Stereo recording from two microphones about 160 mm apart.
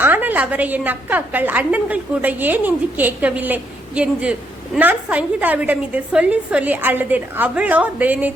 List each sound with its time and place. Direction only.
0.0 s a woman's voice: 10° right (ahead or behind)